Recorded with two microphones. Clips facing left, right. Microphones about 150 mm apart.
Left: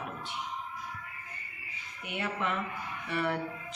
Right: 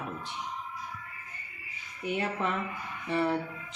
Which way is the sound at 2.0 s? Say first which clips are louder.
Right 4 dB; 35° right (ahead or behind).